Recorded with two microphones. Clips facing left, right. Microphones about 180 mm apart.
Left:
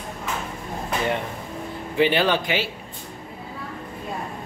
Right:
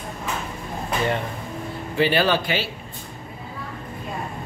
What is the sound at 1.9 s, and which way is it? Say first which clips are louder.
Speech: even; 20° left (ahead or behind).